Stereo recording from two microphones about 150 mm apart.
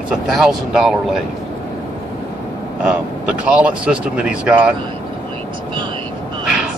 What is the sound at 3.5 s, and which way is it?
Speech, 10° right (ahead or behind).